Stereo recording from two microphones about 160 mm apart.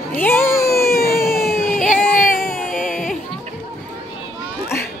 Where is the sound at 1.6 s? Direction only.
55° left (ahead or behind).